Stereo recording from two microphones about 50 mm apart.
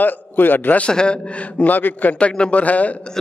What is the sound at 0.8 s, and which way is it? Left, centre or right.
Speech, centre.